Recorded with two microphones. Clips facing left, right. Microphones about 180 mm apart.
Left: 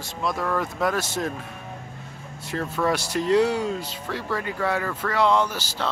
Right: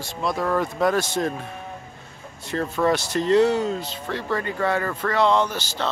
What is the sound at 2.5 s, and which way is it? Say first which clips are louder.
Speech: right 3 dB; centre (ahead or behind).